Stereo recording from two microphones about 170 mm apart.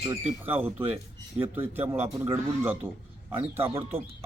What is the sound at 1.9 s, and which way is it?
A man's voice, 10° right (ahead or behind).